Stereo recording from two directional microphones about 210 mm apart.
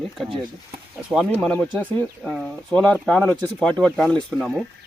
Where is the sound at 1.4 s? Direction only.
5° left (ahead or behind).